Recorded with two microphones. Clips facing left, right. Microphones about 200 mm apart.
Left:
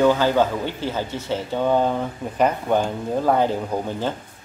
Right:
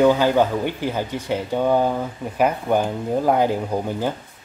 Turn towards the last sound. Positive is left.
turn(degrees=-10)  # may be behind; listen again after turning